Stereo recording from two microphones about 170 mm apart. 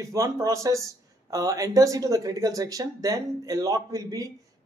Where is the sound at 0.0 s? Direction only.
20° right (ahead or behind).